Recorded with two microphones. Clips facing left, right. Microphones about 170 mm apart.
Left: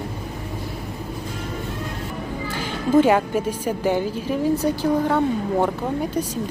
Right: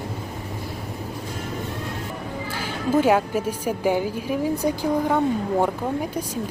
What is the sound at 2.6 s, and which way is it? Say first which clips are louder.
A woman's voice: left 3 dB; 10° right (ahead or behind).